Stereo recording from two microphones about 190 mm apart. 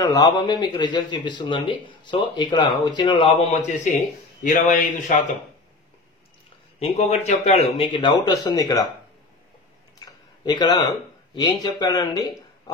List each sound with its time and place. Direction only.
0.0 s a man's voice: 20° left (ahead or behind); by 5.1 s 45° left (ahead or behind)
6.8 s a man's voice: 35° left (ahead or behind)
9.9 s a sound: 20° left (ahead or behind)
11.3 s a man's voice: 25° left (ahead or behind)